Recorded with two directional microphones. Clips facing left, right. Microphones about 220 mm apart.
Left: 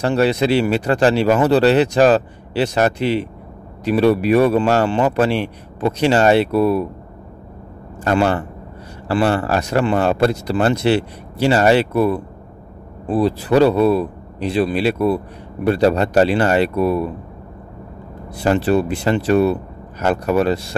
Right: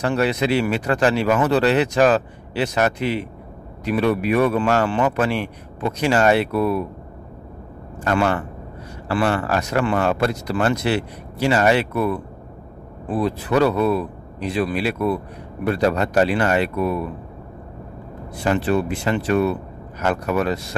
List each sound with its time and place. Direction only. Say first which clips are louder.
0.0 s speech: left 4 dB; 30° left (ahead or behind)
8.0 s speech: left 3 dB; 30° left (ahead or behind)
18.4 s speech: left 4 dB; 35° left (ahead or behind)